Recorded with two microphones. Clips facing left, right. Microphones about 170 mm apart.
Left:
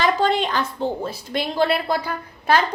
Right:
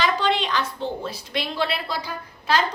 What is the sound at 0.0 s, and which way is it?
A woman's voice, 45° left (ahead or behind).